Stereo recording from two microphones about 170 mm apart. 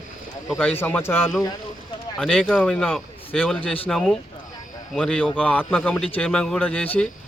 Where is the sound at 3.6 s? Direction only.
35° left (ahead or behind).